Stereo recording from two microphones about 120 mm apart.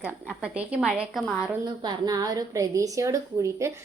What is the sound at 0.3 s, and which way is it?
Speech, 10° right (ahead or behind).